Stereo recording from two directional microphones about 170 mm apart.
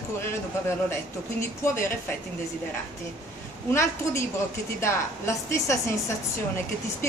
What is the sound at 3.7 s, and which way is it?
Speech, 15° left (ahead or behind).